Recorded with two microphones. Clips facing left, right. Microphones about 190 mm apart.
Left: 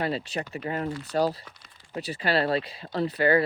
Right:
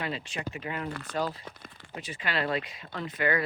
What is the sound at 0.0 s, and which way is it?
Speech, 35° left (ahead or behind).